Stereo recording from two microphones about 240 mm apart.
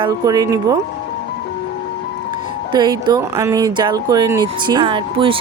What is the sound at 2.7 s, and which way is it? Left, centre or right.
Speech, centre.